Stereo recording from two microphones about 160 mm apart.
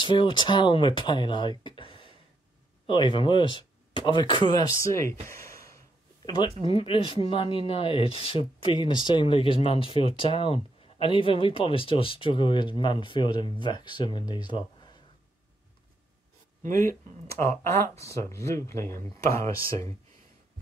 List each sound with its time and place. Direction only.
0.0 s speech: 30° left (ahead or behind)
5.3 s a sound: 20° left (ahead or behind)
6.6 s speech: 35° left (ahead or behind)
16.6 s speech: 60° right (ahead or behind)
17.4 s speech: 15° left (ahead or behind)